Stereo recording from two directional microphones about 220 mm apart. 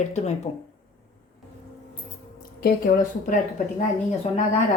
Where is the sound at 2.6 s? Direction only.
40° left (ahead or behind).